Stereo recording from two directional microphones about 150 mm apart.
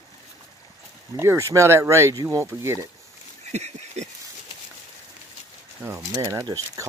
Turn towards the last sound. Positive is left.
turn(degrees=-25)  # may be behind; listen again after turning